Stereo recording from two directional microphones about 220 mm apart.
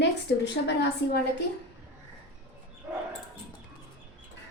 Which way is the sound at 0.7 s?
50° left (ahead or behind).